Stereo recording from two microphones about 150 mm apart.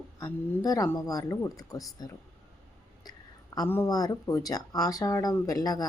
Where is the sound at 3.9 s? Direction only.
25° left (ahead or behind).